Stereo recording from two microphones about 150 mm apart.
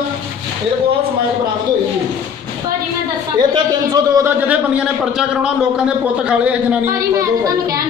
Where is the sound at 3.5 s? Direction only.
30° right (ahead or behind).